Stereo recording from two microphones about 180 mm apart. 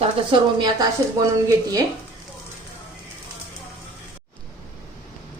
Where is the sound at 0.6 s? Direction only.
20° right (ahead or behind).